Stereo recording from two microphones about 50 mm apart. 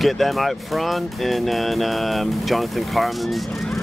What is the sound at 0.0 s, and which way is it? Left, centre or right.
Speech, centre.